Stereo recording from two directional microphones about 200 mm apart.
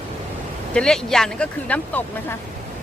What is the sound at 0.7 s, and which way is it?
Speech, 5° left (ahead or behind).